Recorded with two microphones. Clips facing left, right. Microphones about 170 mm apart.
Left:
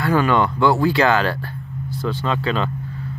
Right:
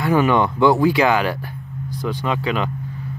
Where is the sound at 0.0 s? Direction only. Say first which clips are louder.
Right 1 dB; 20° right (ahead or behind).